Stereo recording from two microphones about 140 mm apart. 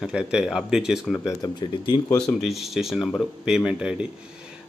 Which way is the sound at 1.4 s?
30° left (ahead or behind).